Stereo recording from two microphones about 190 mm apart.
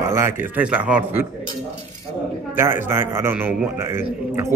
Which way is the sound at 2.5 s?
10° right (ahead or behind).